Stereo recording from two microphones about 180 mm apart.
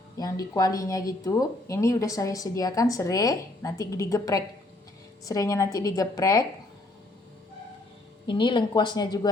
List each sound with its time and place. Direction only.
0.2 s speech: 20° left (ahead or behind)
8.3 s speech: 25° left (ahead or behind)